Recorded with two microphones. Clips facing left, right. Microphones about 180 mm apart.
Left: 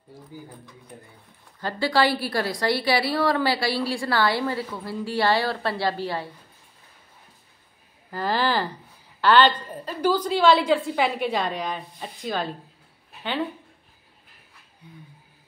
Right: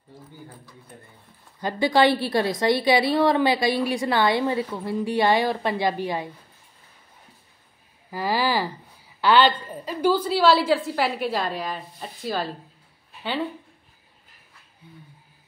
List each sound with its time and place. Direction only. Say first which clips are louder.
1.6 s a woman's voice: right 3 dB; 15° right (ahead or behind)
8.1 s a woman's voice: even; 10° right (ahead or behind)